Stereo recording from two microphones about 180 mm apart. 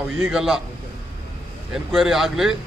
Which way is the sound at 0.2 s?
5° right (ahead or behind).